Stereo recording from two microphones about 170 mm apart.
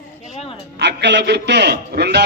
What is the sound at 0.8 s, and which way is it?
A man's voice, 90° right.